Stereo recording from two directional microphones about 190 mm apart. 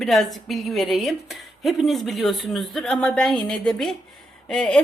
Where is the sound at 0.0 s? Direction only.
Centre (ahead or behind).